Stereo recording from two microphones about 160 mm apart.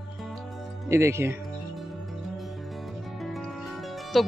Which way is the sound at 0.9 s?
15° right (ahead or behind).